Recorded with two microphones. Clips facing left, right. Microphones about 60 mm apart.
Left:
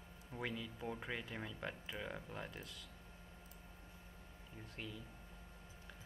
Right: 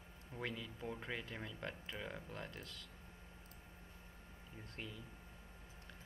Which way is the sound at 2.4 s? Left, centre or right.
Centre.